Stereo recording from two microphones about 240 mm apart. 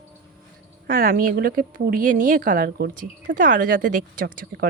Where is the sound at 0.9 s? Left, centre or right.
Right.